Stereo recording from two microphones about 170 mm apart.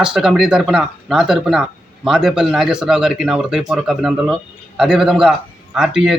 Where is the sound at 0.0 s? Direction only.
5° right (ahead or behind).